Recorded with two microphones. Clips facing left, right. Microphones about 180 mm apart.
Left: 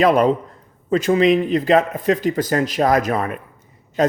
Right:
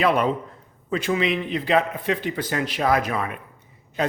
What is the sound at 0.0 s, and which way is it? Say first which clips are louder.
A man's voice: left 6 dB; 40° left (ahead or behind).